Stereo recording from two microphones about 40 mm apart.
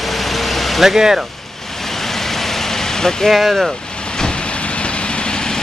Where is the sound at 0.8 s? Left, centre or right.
Centre.